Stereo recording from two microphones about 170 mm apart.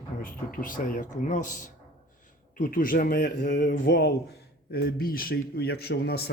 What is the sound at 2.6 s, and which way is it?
A man's voice, 55° left (ahead or behind).